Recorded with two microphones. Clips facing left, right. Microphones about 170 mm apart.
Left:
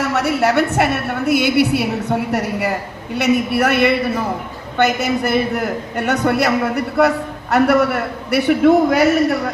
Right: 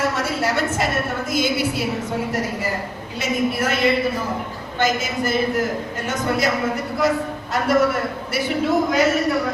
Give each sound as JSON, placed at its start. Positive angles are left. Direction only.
{"t": 0.1, "sound": "a woman's voice", "side_deg": 65}